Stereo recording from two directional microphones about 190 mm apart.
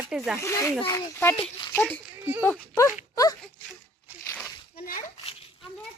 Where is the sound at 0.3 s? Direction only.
15° left (ahead or behind).